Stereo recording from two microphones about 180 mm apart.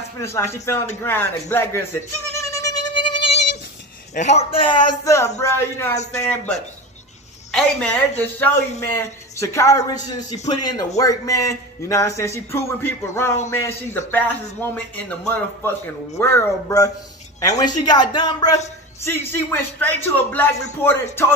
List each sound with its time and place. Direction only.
0.2 s speech: 15° left (ahead or behind)
2.4 s music: 15° left (ahead or behind)
4.1 s a man's voice: 40° left (ahead or behind); by 6.5 s 15° left (ahead or behind)
7.5 s a man's voice: 5° left (ahead or behind); by 18.6 s 20° left (ahead or behind)
19.0 s speech: 10° left (ahead or behind)